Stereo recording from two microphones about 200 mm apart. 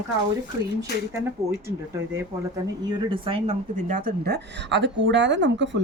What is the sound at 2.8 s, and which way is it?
A woman's voice, 20° right (ahead or behind).